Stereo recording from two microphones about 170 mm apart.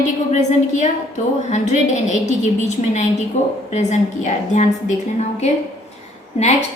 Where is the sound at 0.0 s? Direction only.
45° left (ahead or behind).